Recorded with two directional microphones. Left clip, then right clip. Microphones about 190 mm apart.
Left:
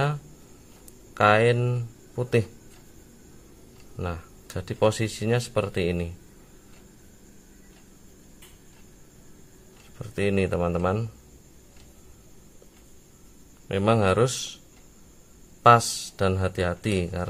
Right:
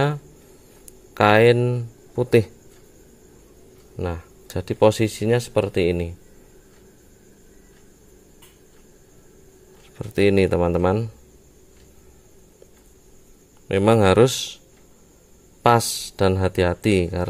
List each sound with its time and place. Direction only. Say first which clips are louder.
1.1 s speech: right 5 dB; 35° right (ahead or behind)
3.9 s speech: right 5 dB; 25° right (ahead or behind)
9.9 s speech: right 8 dB; 35° right (ahead or behind)
13.7 s speech: right 6 dB; 30° right (ahead or behind)
15.6 s speech: even; 30° right (ahead or behind)